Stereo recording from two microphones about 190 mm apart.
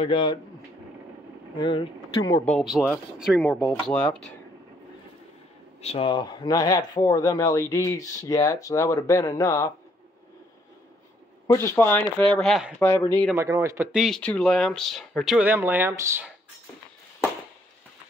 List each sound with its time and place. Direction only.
0.0 s speech: 25° left (ahead or behind)
1.6 s speech: 25° left (ahead or behind)
2.4 s speech: centre (ahead or behind)
5.8 s speech: 35° left (ahead or behind)
11.4 s speech: 15° left (ahead or behind)
12.7 s speech: 10° left (ahead or behind)
13.4 s speech: 15° right (ahead or behind)
13.9 s speech: centre (ahead or behind)